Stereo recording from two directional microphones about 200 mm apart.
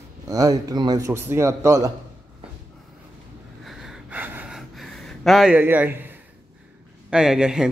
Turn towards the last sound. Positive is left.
turn(degrees=-5)  # may be behind; listen again after turning